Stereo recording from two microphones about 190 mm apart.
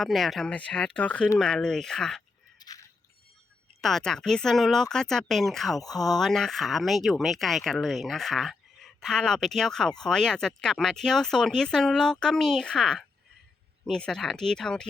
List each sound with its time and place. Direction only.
0.0 s speech: centre (ahead or behind)
2.6 s a sound: 20° left (ahead or behind)
3.8 s speech: centre (ahead or behind)